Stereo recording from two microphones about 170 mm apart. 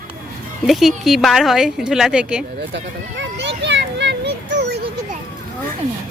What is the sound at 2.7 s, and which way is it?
Children playing, 90° right.